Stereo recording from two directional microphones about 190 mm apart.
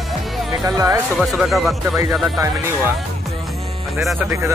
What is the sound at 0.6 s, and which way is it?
Speech, 20° right (ahead or behind).